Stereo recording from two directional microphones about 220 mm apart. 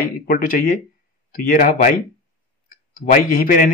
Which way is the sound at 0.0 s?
40° left (ahead or behind).